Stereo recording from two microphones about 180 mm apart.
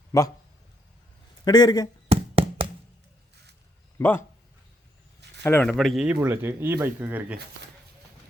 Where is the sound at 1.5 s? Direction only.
20° left (ahead or behind).